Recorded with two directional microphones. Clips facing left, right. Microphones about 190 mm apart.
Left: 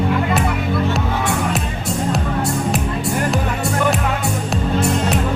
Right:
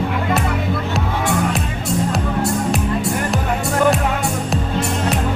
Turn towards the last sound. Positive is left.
turn(degrees=0)  # may be behind; listen again after turning